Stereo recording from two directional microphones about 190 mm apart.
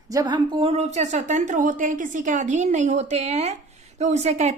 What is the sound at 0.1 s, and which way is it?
A woman's voice, 20° right (ahead or behind).